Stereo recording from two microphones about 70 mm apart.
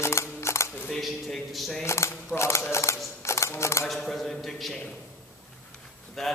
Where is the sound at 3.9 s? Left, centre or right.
Centre.